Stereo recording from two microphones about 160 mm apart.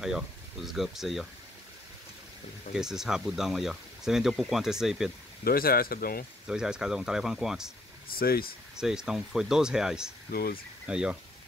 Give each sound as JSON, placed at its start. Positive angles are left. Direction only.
{"t": 0.0, "sound": "speech", "side_deg": 0}
{"t": 2.7, "sound": "speech", "side_deg": -5}
{"t": 5.4, "sound": "speech", "side_deg": 70}
{"t": 6.4, "sound": "speech", "side_deg": -5}
{"t": 8.1, "sound": "speech", "side_deg": 70}
{"t": 8.7, "sound": "speech", "side_deg": -5}
{"t": 10.3, "sound": "speech", "side_deg": 70}
{"t": 10.9, "sound": "speech", "side_deg": -5}